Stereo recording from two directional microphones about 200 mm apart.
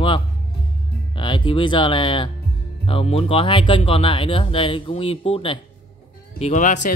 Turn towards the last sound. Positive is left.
turn(degrees=40)  # may be behind; listen again after turning